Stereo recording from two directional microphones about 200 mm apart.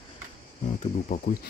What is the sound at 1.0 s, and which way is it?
Speech, 45° left (ahead or behind).